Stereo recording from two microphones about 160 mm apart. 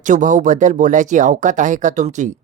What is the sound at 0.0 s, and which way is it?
Speech, 50° right (ahead or behind).